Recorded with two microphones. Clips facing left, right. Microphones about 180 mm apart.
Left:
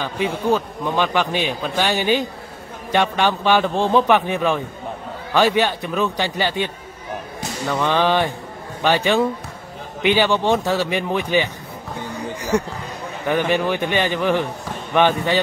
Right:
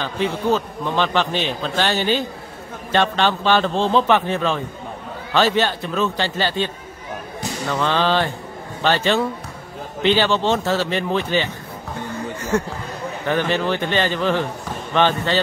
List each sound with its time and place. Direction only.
0.0 s a man's voice: 10° left (ahead or behind)
12.1 s a sound: 15° left (ahead or behind)
13.3 s a man's voice: 15° left (ahead or behind)